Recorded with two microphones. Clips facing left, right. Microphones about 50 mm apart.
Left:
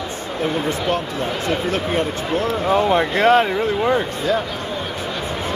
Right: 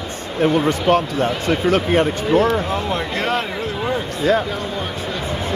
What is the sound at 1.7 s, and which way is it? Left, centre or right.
Speech, right.